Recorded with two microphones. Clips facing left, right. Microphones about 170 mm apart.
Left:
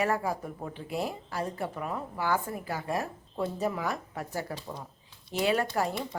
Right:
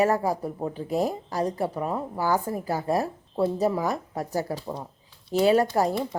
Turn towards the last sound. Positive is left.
turn(degrees=-35)  # may be behind; listen again after turning